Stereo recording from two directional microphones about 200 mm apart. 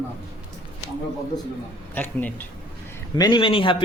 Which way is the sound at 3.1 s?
20° left (ahead or behind).